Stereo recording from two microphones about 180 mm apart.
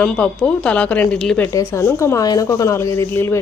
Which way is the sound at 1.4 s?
15° left (ahead or behind).